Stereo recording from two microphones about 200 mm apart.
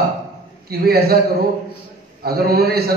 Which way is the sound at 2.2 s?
50° right (ahead or behind).